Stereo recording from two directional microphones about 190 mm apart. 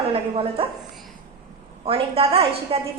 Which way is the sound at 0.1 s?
30° right (ahead or behind).